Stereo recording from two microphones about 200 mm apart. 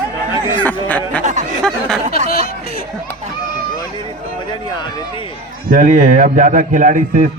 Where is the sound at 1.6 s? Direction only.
Centre (ahead or behind).